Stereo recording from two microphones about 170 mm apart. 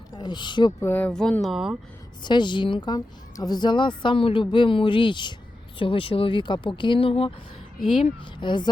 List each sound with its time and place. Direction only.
0.2 s a woman's voice: 25° left (ahead or behind)
0.9 s speech: 10° left (ahead or behind)
2.2 s a woman's voice: 25° left (ahead or behind)